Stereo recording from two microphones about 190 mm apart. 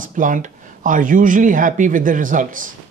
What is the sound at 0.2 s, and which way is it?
Speech, 45° right (ahead or behind).